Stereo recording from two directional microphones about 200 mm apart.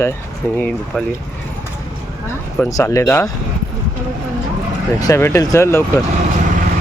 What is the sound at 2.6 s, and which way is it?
Speech, 15° left (ahead or behind).